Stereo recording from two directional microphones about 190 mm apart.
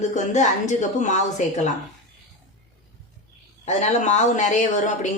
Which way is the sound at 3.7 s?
35° left (ahead or behind).